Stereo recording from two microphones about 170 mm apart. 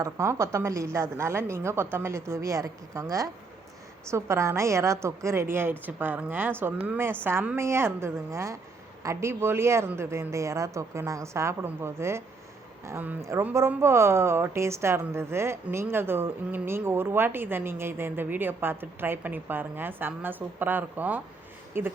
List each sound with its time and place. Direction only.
0.0 s speech: 15° right (ahead or behind)